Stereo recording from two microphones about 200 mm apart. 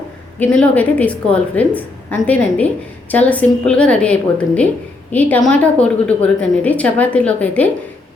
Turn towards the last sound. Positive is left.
turn(degrees=5)  # may be behind; listen again after turning